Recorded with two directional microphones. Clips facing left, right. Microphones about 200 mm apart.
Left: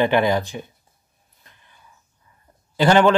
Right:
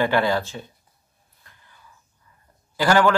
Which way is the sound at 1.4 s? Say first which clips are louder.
Even; 20° left (ahead or behind).